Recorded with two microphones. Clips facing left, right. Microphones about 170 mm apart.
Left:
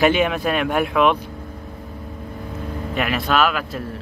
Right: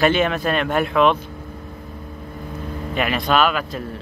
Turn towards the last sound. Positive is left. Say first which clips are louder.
# right 1 dB
turn(degrees=5)  # may be behind; listen again after turning